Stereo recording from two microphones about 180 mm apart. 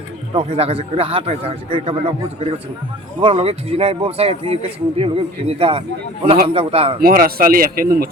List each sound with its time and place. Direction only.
0.3 s a man's voice: 30° right (ahead or behind)
7.0 s a man's voice: 55° right (ahead or behind)